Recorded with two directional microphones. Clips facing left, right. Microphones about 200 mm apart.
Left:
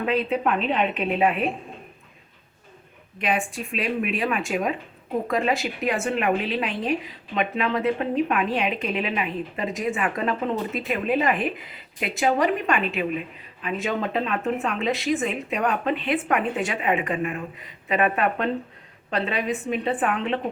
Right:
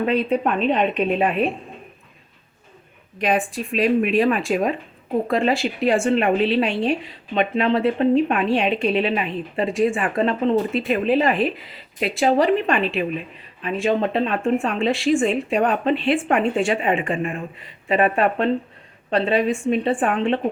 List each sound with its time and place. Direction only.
0.0 s a woman's voice: 40° right (ahead or behind)
3.2 s a woman's voice: 35° right (ahead or behind)